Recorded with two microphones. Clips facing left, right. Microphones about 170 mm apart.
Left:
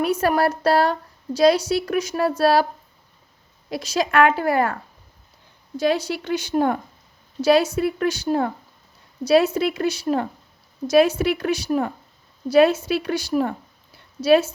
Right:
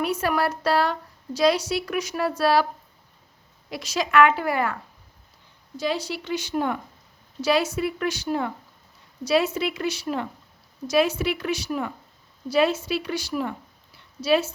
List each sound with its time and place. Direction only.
0.0 s a woman's voice: 40° left (ahead or behind)
3.7 s a woman's voice: 35° left (ahead or behind)
5.8 s a woman's voice: 50° left (ahead or behind)